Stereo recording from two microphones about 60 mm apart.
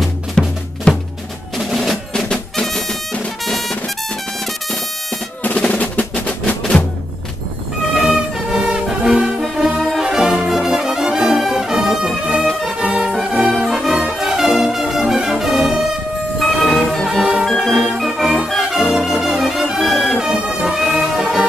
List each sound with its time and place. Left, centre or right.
0.4 s drum: centre
0.9 s music: centre
1.6 s percussion: centre
2.1 s music: centre
5.4 s music: left
8.0 s music: centre
9.4 s brass instrument: centre
12.6 s music: centre
13.5 s brass instrument: centre
16.3 s music: centre